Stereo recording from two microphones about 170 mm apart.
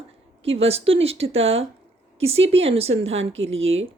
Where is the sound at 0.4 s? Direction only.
35° right (ahead or behind).